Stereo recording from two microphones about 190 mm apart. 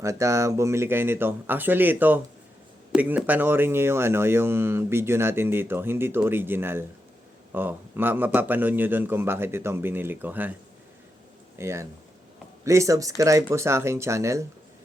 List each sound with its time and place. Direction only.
0.0 s speech: 15° right (ahead or behind)
11.5 s speech: 15° right (ahead or behind)